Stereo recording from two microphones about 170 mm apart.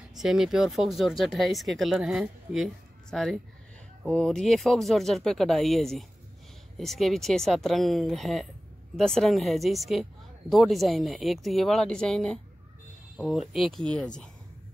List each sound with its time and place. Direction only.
0.1 s speech: centre (ahead or behind)